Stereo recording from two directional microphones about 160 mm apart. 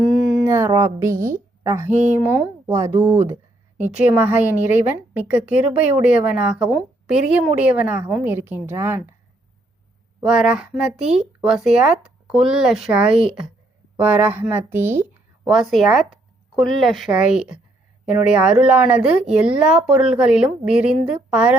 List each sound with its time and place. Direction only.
0.0 s a sound: centre (ahead or behind)
0.4 s music: 20° right (ahead or behind)
1.6 s a woman's voice: 15° right (ahead or behind)
10.2 s a woman's voice: 5° right (ahead or behind)
15.4 s a woman's voice: centre (ahead or behind)